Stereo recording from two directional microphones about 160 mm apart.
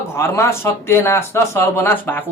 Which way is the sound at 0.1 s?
15° left (ahead or behind).